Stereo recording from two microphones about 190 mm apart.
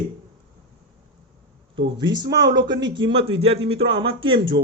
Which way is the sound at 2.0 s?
25° right (ahead or behind).